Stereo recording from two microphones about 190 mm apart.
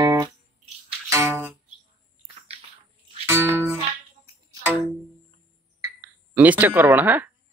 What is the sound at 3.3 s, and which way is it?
Music, 10° right (ahead or behind).